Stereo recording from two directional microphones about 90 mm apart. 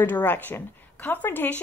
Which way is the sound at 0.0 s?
20° left (ahead or behind).